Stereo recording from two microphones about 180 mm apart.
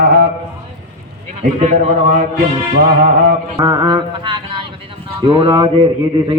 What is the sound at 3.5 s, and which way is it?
Music, 25° right (ahead or behind).